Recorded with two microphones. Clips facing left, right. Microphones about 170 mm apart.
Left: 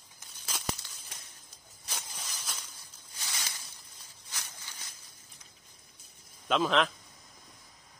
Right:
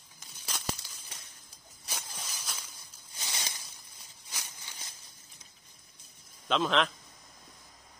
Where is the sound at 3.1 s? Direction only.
20° right (ahead or behind).